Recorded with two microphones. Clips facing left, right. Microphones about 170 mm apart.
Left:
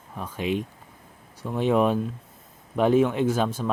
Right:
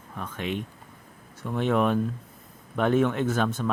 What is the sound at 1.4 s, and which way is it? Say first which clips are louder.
Speech: left 2 dB; 15° left (ahead or behind).